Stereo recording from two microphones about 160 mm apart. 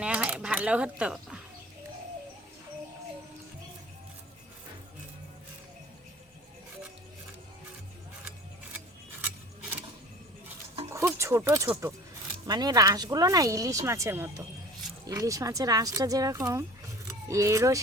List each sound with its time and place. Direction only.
0.0 s coin: 5° right (ahead or behind)
10.8 s a sound: 15° right (ahead or behind)
11.7 s speech: 15° right (ahead or behind)
12.5 s speech: 25° right (ahead or behind)